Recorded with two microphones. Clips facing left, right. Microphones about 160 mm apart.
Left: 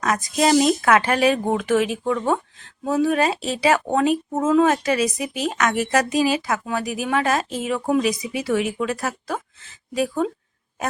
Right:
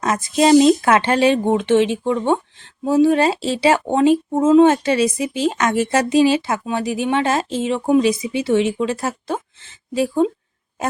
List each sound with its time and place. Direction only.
0.0 s speech: 25° right (ahead or behind)